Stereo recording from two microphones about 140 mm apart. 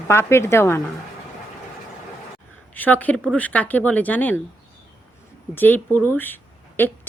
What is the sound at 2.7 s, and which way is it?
A woman's voice, 10° left (ahead or behind).